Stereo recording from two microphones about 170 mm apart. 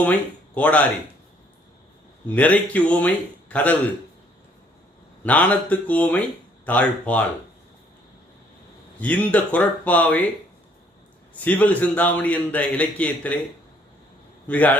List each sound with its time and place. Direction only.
0.0 s speech: 10° left (ahead or behind)
2.3 s a man's voice: 10° left (ahead or behind)
5.2 s a man's voice: 10° left (ahead or behind)
9.0 s a man's voice: 10° left (ahead or behind)
11.4 s a man's voice: 10° left (ahead or behind)
14.4 s a man's voice: 10° left (ahead or behind)